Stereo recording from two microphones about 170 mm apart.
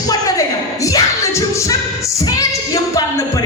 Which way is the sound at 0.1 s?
20° left (ahead or behind).